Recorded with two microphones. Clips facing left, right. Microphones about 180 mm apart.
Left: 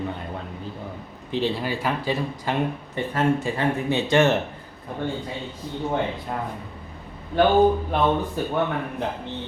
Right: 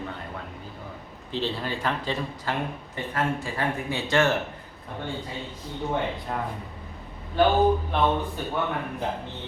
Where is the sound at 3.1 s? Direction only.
25° left (ahead or behind).